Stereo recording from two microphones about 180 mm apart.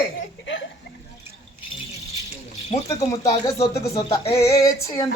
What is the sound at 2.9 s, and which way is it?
Speech, 20° left (ahead or behind).